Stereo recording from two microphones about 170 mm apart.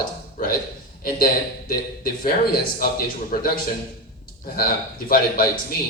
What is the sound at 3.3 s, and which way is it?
Speech, 55° left (ahead or behind).